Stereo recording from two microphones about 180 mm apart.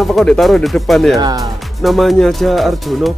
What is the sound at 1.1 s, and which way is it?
Speech, 20° right (ahead or behind).